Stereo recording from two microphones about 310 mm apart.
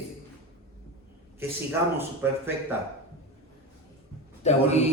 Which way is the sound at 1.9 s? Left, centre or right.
Centre.